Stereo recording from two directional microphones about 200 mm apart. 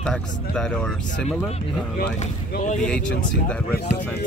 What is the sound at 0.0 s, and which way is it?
Speech, 5° left (ahead or behind).